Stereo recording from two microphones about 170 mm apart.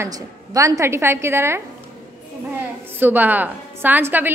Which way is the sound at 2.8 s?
10° right (ahead or behind).